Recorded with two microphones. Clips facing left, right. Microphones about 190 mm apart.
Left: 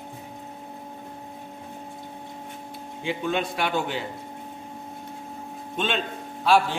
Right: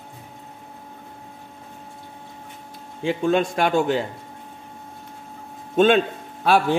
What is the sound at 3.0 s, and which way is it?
Speech, 45° right (ahead or behind).